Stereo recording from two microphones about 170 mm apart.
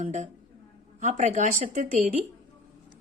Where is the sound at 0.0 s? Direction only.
45° right (ahead or behind).